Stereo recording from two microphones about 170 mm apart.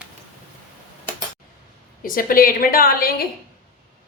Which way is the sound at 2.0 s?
55° left (ahead or behind).